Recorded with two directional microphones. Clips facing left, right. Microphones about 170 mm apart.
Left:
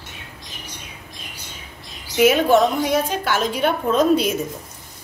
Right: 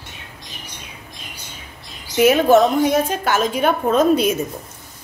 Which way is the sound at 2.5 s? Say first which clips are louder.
Right 3 dB; 45° right (ahead or behind).